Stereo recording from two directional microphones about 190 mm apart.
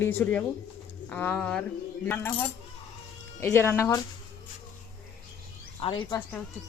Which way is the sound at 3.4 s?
10° left (ahead or behind).